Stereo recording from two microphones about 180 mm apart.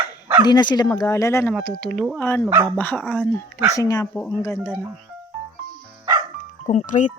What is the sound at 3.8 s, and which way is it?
Speech, 20° left (ahead or behind).